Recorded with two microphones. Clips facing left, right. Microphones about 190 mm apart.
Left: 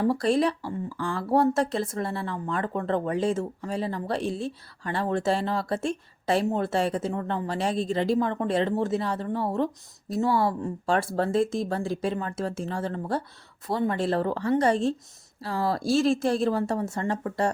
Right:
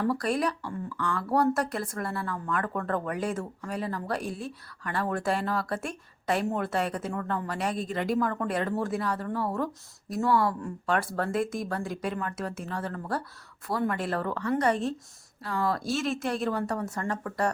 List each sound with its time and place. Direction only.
0.0 s a woman's voice: 25° left (ahead or behind)